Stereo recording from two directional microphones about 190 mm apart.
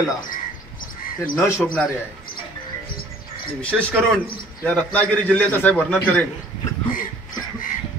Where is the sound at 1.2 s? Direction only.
5° left (ahead or behind).